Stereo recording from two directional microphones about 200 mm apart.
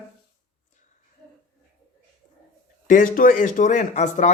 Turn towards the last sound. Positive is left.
turn(degrees=35)  # may be behind; listen again after turning